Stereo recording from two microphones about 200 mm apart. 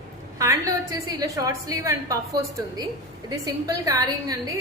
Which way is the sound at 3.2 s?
15° right (ahead or behind).